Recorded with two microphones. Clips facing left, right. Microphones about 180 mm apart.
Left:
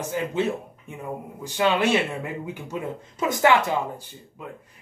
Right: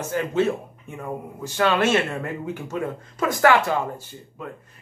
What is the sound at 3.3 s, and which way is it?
Speech, 20° left (ahead or behind).